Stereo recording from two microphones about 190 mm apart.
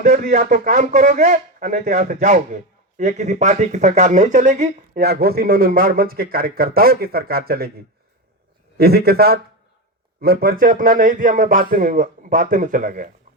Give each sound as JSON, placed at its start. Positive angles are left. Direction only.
{"t": 0.0, "sound": "a man's voice", "side_deg": -45}
{"t": 4.9, "sound": "a man's voice", "side_deg": -55}
{"t": 8.8, "sound": "a man's voice", "side_deg": -55}